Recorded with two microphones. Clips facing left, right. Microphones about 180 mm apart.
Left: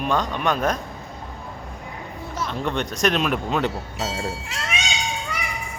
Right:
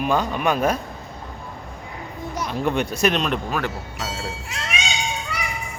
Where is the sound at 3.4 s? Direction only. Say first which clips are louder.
Left 2 dB; 20° left (ahead or behind).